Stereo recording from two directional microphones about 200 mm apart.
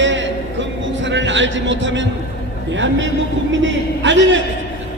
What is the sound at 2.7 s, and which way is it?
A man's voice, 65° right (ahead or behind).